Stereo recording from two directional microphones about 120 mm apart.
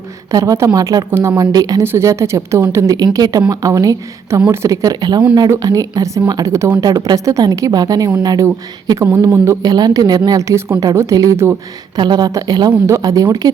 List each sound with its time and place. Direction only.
0.3 s a woman's voice: 30° right (ahead or behind)
9.0 s a woman's voice: 20° right (ahead or behind)
9.7 s a woman's voice: 35° right (ahead or behind)
11.9 s speech: 35° right (ahead or behind)